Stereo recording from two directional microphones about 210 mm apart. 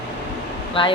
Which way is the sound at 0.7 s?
25° left (ahead or behind).